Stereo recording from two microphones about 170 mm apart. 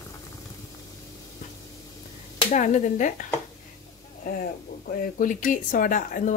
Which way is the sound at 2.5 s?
45° left (ahead or behind).